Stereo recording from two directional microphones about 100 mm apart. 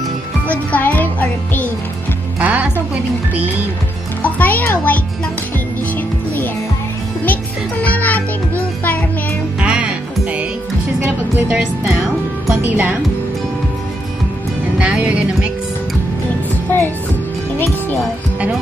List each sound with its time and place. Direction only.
0.5 s music: 15° left (ahead or behind)
2.4 s music: 15° right (ahead or behind)
4.2 s a child's voice: 15° left (ahead or behind)
5.9 s music: 20° left (ahead or behind)
9.6 s music: 10° right (ahead or behind)
12.6 s a woman's voice: 15° right (ahead or behind)
14.8 s music: 10° right (ahead or behind)